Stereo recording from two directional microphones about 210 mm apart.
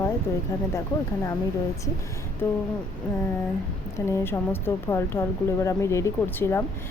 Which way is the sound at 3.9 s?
10° left (ahead or behind).